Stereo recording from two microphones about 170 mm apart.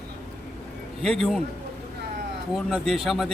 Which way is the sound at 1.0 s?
Centre (ahead or behind).